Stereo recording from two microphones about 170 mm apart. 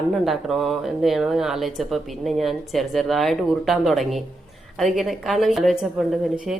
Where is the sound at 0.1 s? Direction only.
Centre (ahead or behind).